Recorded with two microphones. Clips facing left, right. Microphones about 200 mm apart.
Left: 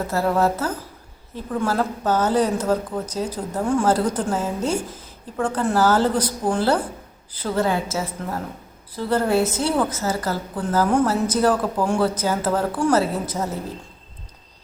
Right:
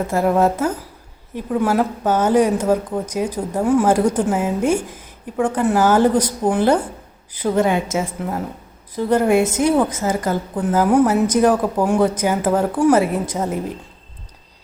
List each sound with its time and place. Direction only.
0.1 s a woman's voice: 20° right (ahead or behind)
6.4 s a woman's voice: 25° right (ahead or behind)